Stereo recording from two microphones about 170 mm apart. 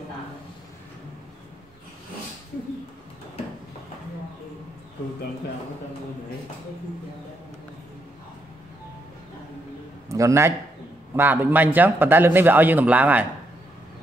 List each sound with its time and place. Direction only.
10.0 s a man's voice: 20° right (ahead or behind)